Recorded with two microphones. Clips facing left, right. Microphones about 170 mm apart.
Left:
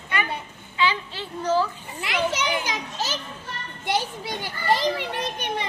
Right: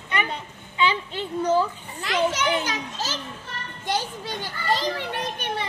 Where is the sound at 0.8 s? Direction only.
20° right (ahead or behind).